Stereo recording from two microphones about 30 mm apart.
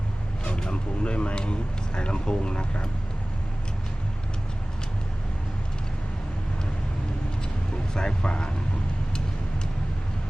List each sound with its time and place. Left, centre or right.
0.7 s speech: left
7.9 s speech: left